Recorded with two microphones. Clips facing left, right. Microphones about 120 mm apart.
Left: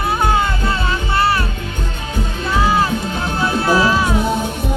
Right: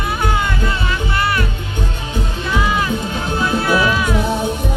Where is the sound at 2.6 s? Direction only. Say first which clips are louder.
Left 4 dB; 30° left (ahead or behind).